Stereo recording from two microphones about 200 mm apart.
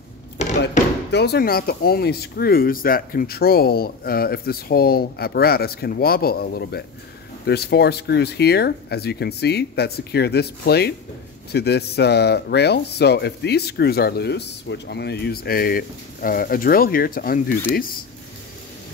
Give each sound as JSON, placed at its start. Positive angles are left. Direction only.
{"t": 1.1, "sound": "speech", "side_deg": 55}